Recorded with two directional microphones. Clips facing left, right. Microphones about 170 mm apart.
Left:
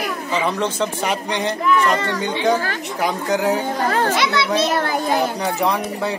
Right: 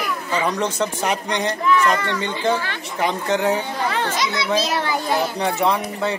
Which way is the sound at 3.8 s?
45° left (ahead or behind).